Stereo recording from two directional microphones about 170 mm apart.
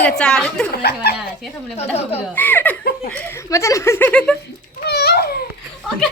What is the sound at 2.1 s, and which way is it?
Speech, 10° left (ahead or behind).